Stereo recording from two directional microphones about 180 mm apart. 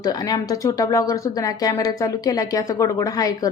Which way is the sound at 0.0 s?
20° left (ahead or behind).